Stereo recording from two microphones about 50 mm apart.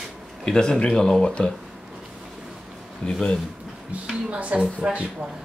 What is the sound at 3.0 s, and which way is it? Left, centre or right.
Speech, left.